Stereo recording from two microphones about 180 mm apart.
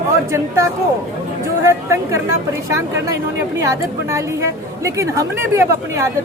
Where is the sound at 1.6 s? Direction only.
15° right (ahead or behind).